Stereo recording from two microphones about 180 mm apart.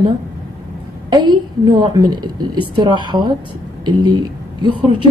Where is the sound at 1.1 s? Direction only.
25° right (ahead or behind).